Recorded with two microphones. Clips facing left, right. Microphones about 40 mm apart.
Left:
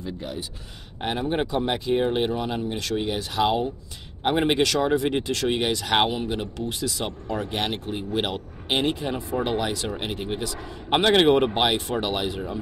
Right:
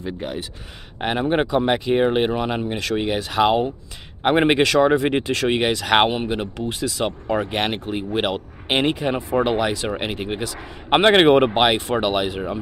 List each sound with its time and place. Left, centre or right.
0.0 s speech: right